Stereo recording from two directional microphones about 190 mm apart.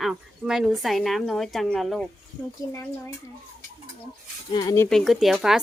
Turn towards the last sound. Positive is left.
turn(degrees=0)  # may be behind; listen again after turning